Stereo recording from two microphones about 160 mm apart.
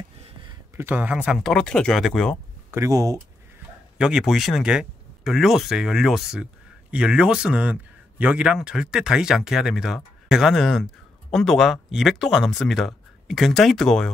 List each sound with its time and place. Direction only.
0.7 s speech: 10° right (ahead or behind)
2.7 s speech: 20° right (ahead or behind)
4.0 s speech: 5° right (ahead or behind)